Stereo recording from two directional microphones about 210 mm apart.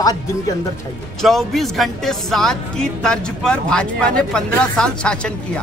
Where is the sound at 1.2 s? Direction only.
Centre (ahead or behind).